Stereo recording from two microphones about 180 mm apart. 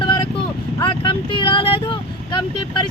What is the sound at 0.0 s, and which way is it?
Vehicle, 25° left (ahead or behind).